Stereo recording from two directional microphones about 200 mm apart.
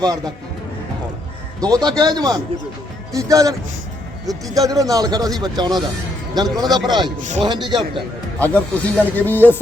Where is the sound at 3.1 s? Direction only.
15° right (ahead or behind).